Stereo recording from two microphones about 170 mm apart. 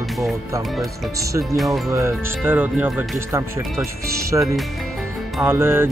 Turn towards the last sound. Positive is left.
turn(degrees=-15)  # may be behind; listen again after turning